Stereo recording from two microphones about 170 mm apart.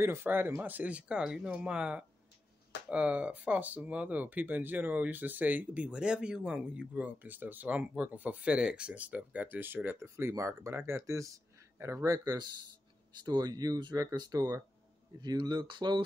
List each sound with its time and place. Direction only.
0.0 s speech: 15° right (ahead or behind)